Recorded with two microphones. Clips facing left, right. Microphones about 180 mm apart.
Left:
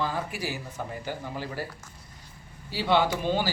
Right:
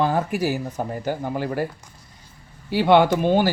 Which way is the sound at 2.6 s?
60° right (ahead or behind).